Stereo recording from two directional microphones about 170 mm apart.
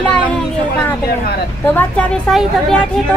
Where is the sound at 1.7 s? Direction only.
10° left (ahead or behind).